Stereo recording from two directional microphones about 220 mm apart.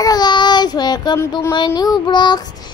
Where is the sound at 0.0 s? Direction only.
20° left (ahead or behind).